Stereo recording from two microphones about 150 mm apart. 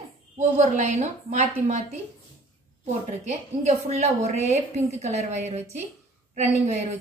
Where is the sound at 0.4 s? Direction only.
50° right (ahead or behind).